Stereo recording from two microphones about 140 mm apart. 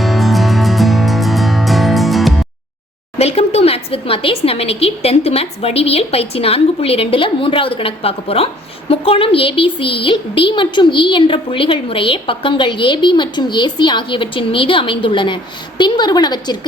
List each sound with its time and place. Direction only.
0.0 s music: centre (ahead or behind)
3.2 s a woman's voice: 50° left (ahead or behind); by 16.6 s 30° left (ahead or behind)